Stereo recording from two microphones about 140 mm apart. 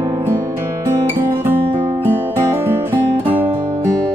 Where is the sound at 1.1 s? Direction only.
15° right (ahead or behind).